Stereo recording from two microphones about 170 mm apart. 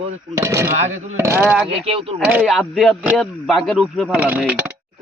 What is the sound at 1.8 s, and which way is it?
Speech, 35° right (ahead or behind).